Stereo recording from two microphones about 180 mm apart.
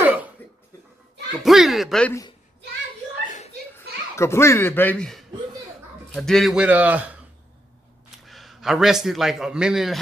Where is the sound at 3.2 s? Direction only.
45° left (ahead or behind).